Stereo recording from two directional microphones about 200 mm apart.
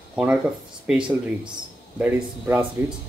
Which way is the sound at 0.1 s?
5° right (ahead or behind).